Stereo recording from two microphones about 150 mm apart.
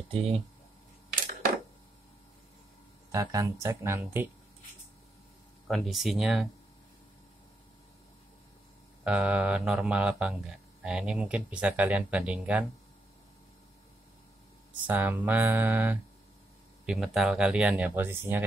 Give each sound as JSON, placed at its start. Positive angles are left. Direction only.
{"t": 0.1, "sound": "speech", "side_deg": -45}
{"t": 3.1, "sound": "speech", "side_deg": -20}
{"t": 5.7, "sound": "speech", "side_deg": 0}
{"t": 9.0, "sound": "speech", "side_deg": -10}
{"t": 14.9, "sound": "speech", "side_deg": -10}